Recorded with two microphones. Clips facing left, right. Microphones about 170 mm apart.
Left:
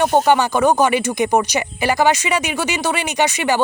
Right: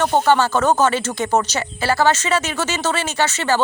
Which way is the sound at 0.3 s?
15° left (ahead or behind).